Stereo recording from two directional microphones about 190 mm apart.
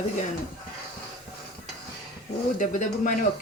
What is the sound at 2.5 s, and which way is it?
Speech, 45° left (ahead or behind).